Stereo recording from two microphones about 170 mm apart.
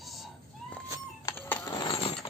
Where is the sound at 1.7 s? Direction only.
30° left (ahead or behind).